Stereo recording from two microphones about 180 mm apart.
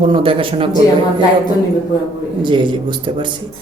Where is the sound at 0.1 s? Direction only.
30° right (ahead or behind).